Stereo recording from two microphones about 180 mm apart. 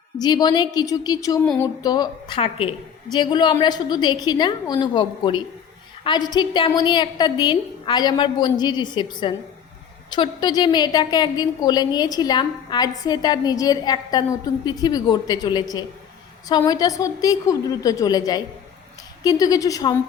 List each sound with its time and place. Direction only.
0.2 s a woman's voice: 25° left (ahead or behind)